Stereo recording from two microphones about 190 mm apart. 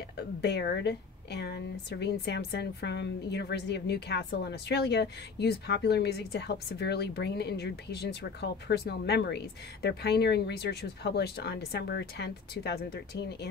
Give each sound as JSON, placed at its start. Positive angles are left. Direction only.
{"t": 0.2, "sound": "a woman's voice", "side_deg": 60}